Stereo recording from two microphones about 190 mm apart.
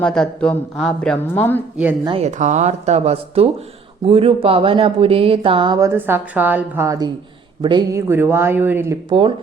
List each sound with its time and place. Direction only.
0.0 s speech: 5° left (ahead or behind)
1.7 s speech: 10° right (ahead or behind)
2.0 s speech: 35° right (ahead or behind); by 9.0 s 10° right (ahead or behind)
9.0 s speech: 30° right (ahead or behind)